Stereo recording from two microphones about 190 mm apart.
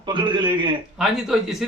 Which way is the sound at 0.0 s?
25° right (ahead or behind).